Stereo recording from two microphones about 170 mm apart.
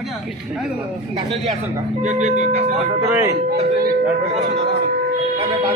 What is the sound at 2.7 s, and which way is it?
Speech, 10° right (ahead or behind).